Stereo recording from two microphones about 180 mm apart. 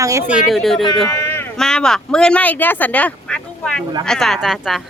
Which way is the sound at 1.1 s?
15° left (ahead or behind).